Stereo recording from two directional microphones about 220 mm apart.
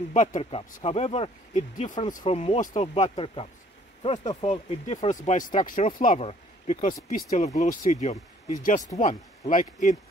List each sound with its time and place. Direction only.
0.1 s speech: 35° left (ahead or behind)